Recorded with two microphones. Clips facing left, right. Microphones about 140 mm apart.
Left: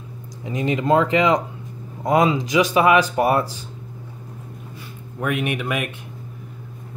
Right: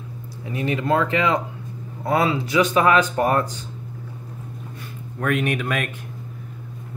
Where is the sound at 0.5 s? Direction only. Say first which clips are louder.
Left 3 dB; 20° left (ahead or behind).